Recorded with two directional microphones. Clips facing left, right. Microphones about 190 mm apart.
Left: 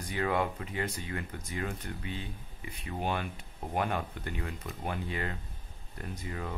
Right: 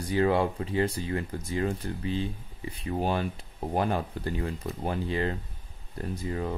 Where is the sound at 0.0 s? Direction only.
30° right (ahead or behind).